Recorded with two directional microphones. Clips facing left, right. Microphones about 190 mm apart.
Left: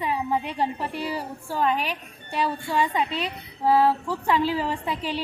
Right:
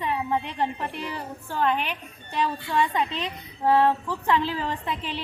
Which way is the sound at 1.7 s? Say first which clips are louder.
Left 1 dB; 35° left (ahead or behind).